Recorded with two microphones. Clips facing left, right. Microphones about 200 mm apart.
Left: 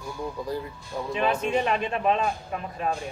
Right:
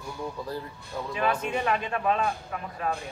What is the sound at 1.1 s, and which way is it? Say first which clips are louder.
A man's voice: left 3 dB; 25° left (ahead or behind).